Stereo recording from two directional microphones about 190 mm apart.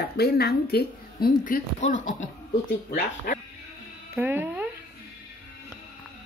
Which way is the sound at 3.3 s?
50° left (ahead or behind).